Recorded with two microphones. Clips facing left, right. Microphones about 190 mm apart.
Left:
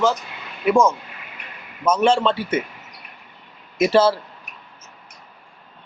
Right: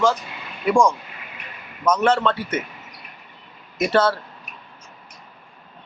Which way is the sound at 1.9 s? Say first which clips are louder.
Left 2 dB; 25° left (ahead or behind).